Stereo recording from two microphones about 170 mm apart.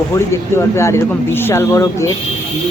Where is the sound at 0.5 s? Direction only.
15° left (ahead or behind).